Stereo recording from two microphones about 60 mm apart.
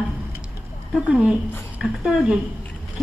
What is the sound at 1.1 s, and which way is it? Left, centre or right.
A woman's voice, centre.